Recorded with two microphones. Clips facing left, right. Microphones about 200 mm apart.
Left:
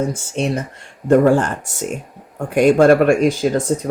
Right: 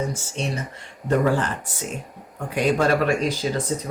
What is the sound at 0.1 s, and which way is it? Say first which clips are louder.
Speech: left 8 dB; 50° left (ahead or behind).